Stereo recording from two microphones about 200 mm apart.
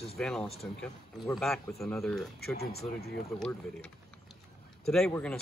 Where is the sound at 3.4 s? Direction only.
5° left (ahead or behind).